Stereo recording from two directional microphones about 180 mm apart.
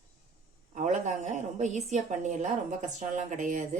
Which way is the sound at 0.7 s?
45° right (ahead or behind).